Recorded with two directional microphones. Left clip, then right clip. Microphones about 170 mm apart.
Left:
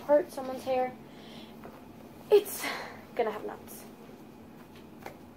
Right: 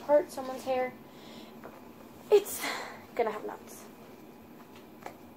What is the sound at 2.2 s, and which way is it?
Speech, 5° right (ahead or behind).